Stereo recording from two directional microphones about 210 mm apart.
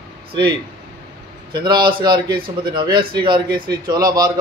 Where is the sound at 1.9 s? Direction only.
20° right (ahead or behind).